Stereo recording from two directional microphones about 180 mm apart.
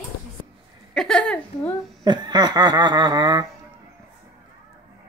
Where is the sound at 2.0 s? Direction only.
25° right (ahead or behind).